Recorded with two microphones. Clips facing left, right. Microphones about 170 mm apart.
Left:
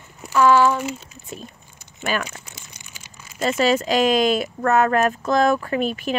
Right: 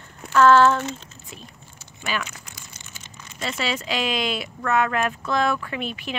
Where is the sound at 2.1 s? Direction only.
45° left (ahead or behind).